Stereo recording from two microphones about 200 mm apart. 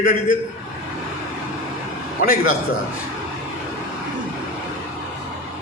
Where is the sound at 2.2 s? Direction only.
45° left (ahead or behind).